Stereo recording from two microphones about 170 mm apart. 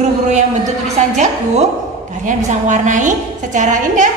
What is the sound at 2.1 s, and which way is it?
A woman's voice, 45° right (ahead or behind).